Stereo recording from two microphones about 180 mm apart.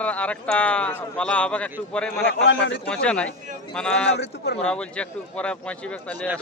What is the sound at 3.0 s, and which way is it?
Speech, 5° left (ahead or behind).